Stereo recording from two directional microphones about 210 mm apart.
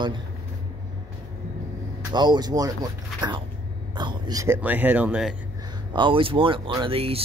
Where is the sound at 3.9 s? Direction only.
20° right (ahead or behind); by 5.3 s 5° right (ahead or behind).